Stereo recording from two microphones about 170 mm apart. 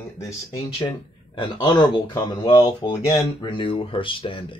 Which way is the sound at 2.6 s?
35° left (ahead or behind).